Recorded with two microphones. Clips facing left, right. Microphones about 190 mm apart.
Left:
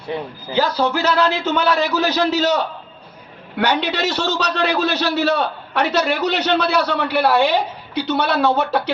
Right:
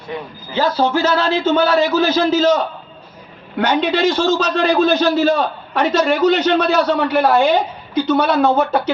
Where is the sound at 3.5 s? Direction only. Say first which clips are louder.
Right 3 dB; 70° left (ahead or behind).